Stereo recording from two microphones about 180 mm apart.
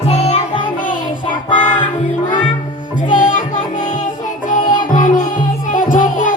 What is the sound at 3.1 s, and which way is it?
Music, 45° left (ahead or behind).